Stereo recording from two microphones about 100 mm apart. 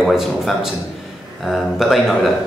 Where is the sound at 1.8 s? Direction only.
Centre (ahead or behind).